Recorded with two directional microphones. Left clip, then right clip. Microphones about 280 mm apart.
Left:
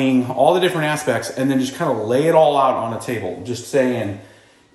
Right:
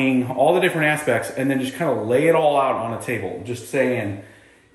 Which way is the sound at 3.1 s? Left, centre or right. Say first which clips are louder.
Left 1 dB; centre.